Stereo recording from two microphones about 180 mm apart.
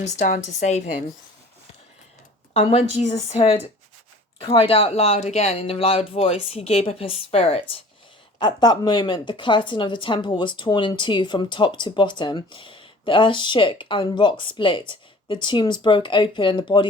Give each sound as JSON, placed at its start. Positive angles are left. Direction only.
{"t": 0.0, "sound": "speech", "side_deg": 45}
{"t": 2.5, "sound": "a woman's voice", "side_deg": 35}